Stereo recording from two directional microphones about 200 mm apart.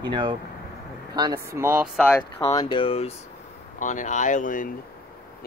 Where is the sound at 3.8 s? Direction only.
40° left (ahead or behind).